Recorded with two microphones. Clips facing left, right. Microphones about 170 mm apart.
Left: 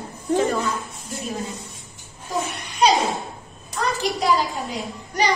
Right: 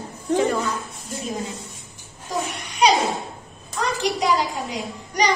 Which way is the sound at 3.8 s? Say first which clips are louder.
Even; 15° right (ahead or behind).